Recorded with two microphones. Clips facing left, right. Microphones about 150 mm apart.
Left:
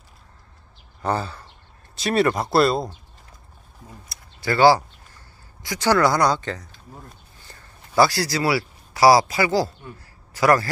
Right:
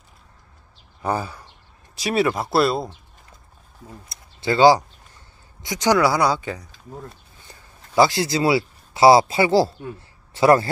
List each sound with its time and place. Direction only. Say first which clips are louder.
1.0 s speech: even; 10° right (ahead or behind)
4.1 s a sound: right 2 dB; 20° right (ahead or behind)
7.9 s speech: right 1 dB; 20° right (ahead or behind)